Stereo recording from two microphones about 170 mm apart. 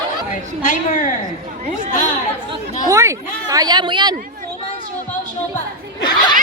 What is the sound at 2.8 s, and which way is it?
Speech, 15° right (ahead or behind).